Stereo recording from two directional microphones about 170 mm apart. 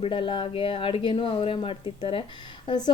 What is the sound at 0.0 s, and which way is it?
A woman's voice, 30° left (ahead or behind).